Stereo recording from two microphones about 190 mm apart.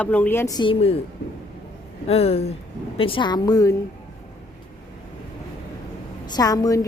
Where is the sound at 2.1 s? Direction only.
30° left (ahead or behind).